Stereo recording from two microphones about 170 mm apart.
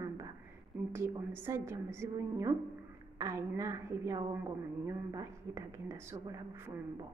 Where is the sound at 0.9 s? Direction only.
15° right (ahead or behind).